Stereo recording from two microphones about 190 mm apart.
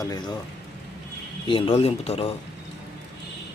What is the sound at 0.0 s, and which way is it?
Speech, 20° left (ahead or behind).